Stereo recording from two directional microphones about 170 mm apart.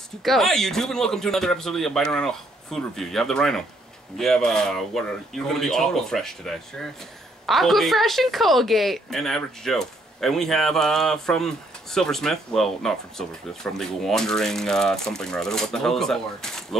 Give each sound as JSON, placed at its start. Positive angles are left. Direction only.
{"t": 0.2, "sound": "a woman's voice", "side_deg": 0}